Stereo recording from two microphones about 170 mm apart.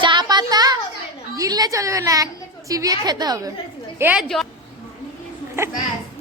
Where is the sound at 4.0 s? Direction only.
10° right (ahead or behind).